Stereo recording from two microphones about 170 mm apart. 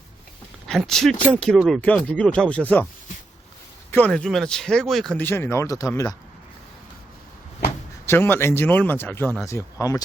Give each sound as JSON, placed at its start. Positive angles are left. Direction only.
{"t": 0.7, "sound": "speech", "side_deg": 0}
{"t": 3.9, "sound": "speech", "side_deg": 5}
{"t": 5.2, "sound": "speech", "side_deg": 15}
{"t": 8.0, "sound": "speech", "side_deg": 15}